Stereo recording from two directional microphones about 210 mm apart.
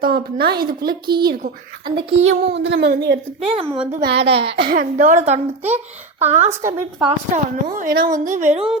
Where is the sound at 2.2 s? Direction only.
60° right (ahead or behind).